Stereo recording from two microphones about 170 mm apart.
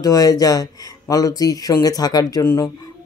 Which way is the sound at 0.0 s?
20° left (ahead or behind).